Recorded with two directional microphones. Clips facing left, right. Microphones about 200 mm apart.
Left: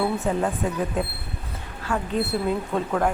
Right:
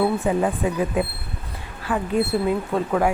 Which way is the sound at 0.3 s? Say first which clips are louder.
Right 3 dB; 15° right (ahead or behind).